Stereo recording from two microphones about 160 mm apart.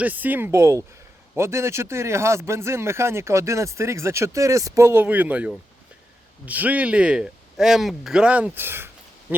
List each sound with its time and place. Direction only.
0.0 s speech: 10° right (ahead or behind)